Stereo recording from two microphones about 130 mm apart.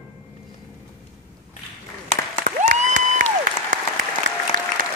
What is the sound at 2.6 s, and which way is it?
Applause, 80° right.